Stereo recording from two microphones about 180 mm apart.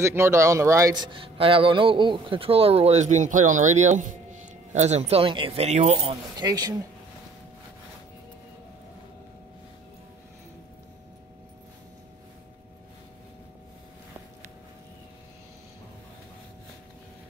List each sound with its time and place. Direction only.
0.0 s speech: 15° right (ahead or behind)